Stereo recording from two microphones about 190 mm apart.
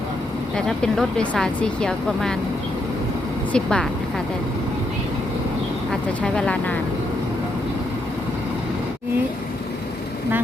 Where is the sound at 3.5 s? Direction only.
5° left (ahead or behind).